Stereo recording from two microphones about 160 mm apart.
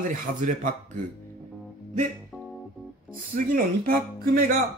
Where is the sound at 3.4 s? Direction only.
65° right (ahead or behind).